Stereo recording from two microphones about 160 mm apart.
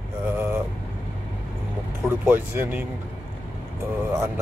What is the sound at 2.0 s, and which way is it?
Speech, 10° right (ahead or behind).